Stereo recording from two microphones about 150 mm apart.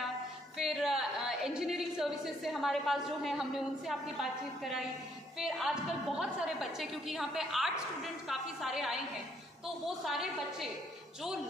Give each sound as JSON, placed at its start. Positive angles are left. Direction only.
{"t": 0.6, "sound": "a woman's voice", "side_deg": 0}